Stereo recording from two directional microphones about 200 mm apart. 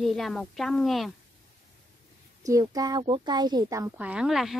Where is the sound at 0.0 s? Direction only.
Centre (ahead or behind).